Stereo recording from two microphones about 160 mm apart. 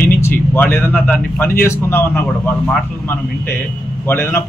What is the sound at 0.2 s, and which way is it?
A man's voice, 15° left (ahead or behind).